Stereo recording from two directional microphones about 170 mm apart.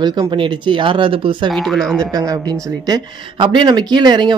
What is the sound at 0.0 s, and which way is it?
Speech, 25° right (ahead or behind).